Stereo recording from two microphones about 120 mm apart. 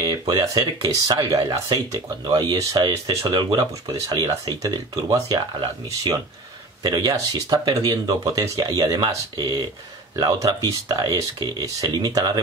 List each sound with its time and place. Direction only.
0.0 s speech: 40° right (ahead or behind)